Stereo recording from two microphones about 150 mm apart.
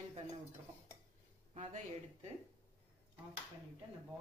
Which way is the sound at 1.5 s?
50° right (ahead or behind).